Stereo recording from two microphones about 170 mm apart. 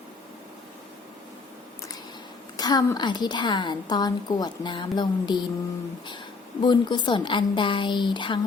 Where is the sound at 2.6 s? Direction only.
25° left (ahead or behind).